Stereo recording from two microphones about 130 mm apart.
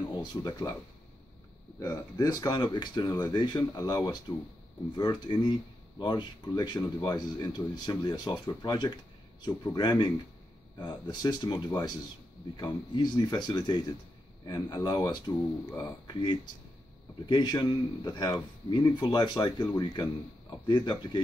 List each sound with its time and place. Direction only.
0.0 s speech: 35° left (ahead or behind)
1.8 s speech: 25° left (ahead or behind)